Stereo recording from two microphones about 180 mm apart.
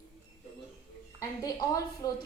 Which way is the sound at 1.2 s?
20° left (ahead or behind).